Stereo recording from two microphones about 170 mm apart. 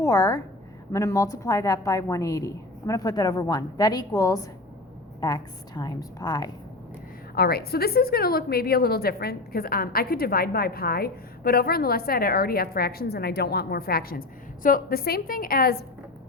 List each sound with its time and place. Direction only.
0.0 s a woman's voice: 20° left (ahead or behind)
7.3 s a woman's voice: 65° left (ahead or behind)